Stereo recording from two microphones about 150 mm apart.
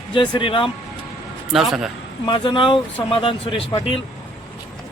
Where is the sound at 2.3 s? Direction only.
35° left (ahead or behind).